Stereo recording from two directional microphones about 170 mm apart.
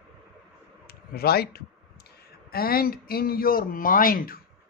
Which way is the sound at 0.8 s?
65° left (ahead or behind).